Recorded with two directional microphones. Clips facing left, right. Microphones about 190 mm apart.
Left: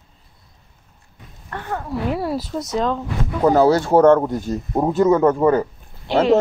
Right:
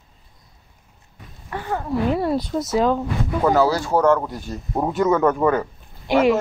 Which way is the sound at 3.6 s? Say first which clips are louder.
Left 5 dB; 25° left (ahead or behind).